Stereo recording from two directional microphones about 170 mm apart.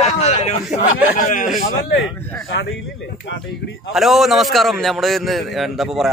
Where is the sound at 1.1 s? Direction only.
55° left (ahead or behind).